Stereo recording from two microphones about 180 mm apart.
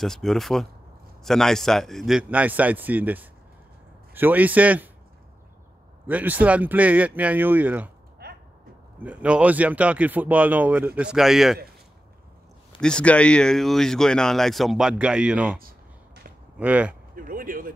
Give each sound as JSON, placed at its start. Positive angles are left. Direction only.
{"t": 0.0, "sound": "speech", "side_deg": 0}
{"t": 6.0, "sound": "speech", "side_deg": -10}
{"t": 8.2, "sound": "a sound", "side_deg": -65}
{"t": 9.0, "sound": "speech", "side_deg": -5}
{"t": 12.8, "sound": "speech", "side_deg": 5}
{"t": 17.1, "sound": "speech", "side_deg": -50}